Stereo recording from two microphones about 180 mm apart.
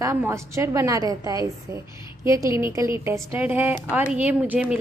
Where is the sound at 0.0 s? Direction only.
15° right (ahead or behind).